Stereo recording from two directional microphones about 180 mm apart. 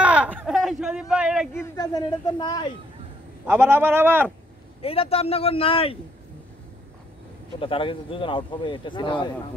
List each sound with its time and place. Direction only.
0.0 s a sound: 5° right (ahead or behind)
1.5 s a man's voice: 15° left (ahead or behind)
3.4 s a man's voice: 10° right (ahead or behind)
4.8 s speech: 30° left (ahead or behind)
7.6 s a man's voice: 30° left (ahead or behind)